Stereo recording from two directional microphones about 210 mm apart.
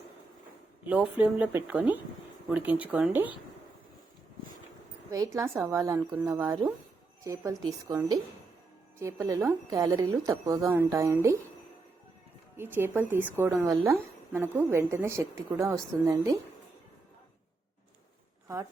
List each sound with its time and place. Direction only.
0.9 s a woman's voice: 5° right (ahead or behind)
5.1 s a woman's voice: 15° right (ahead or behind)
12.5 s a woman's voice: 10° right (ahead or behind)